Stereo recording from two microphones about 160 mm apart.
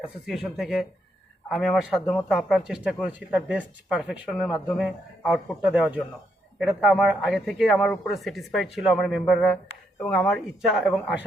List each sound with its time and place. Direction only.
0.5 s speech: centre (ahead or behind)